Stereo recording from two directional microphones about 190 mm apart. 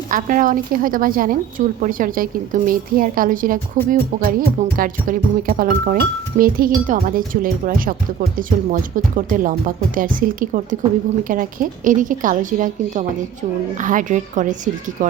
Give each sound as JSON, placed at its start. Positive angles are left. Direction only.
{"t": 0.1, "sound": "a woman's voice", "side_deg": -45}